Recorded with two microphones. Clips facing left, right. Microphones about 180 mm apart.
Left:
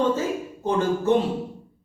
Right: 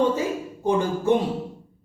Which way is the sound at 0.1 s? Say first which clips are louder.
Left 1 dB; 15° right (ahead or behind).